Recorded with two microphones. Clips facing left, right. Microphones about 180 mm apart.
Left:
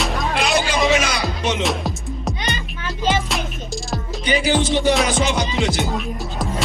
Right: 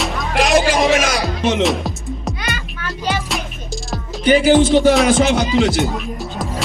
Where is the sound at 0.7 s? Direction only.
50° right (ahead or behind).